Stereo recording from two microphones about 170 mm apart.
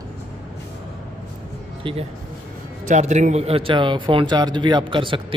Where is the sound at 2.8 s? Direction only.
45° right (ahead or behind).